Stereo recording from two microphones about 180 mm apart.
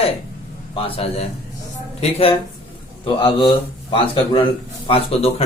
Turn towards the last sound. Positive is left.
turn(degrees=35)  # may be behind; listen again after turning